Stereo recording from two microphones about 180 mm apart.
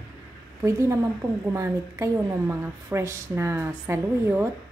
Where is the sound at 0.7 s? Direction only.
15° right (ahead or behind).